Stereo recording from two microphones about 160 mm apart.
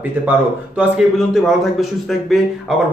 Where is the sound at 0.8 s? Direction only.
5° right (ahead or behind).